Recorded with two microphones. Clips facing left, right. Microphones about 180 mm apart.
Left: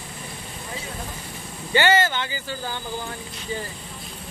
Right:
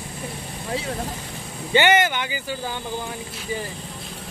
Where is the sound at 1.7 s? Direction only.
20° right (ahead or behind).